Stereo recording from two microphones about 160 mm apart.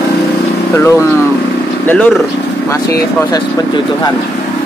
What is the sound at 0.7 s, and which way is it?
Speech, 15° left (ahead or behind).